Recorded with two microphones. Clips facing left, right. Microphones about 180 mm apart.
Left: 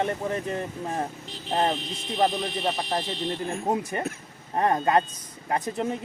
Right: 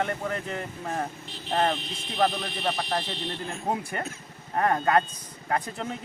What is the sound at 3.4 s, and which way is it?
Speech, 20° left (ahead or behind).